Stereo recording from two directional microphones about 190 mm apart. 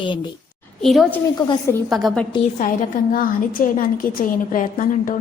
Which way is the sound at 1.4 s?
20° left (ahead or behind).